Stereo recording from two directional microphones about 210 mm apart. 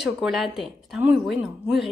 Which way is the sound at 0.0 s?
Centre (ahead or behind).